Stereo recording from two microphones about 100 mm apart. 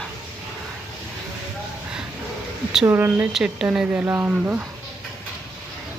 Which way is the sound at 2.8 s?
20° right (ahead or behind).